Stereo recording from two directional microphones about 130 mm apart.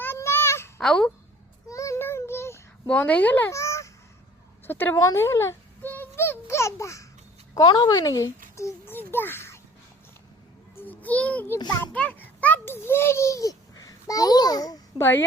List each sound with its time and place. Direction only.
0.0 s a sound: 20° left (ahead or behind)
0.8 s speech: 5° left (ahead or behind)
1.7 s child singing: 25° left (ahead or behind)
2.8 s a woman's voice: 10° left (ahead or behind)
3.5 s honk: 25° left (ahead or behind)
4.6 s a child's voice: 15° left (ahead or behind)
7.6 s speech: 40° left (ahead or behind)
7.9 s speech: 25° left (ahead or behind)
8.5 s a sound: 20° left (ahead or behind)
10.8 s a sound: 15° left (ahead or behind); by 15.0 s 30° left (ahead or behind)